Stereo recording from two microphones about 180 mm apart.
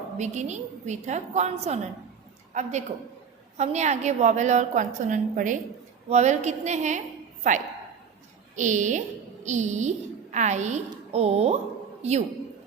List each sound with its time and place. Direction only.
0.2 s a woman's voice: 40° right (ahead or behind)